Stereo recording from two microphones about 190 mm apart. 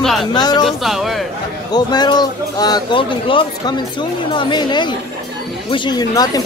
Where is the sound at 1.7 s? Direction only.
20° left (ahead or behind).